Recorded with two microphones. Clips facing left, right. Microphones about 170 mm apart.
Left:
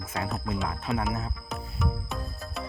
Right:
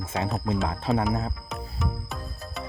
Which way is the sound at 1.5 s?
Centre (ahead or behind).